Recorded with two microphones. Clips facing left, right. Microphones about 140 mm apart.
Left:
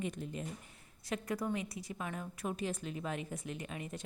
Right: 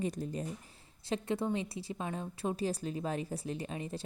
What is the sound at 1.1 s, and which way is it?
A woman's voice, 25° right (ahead or behind).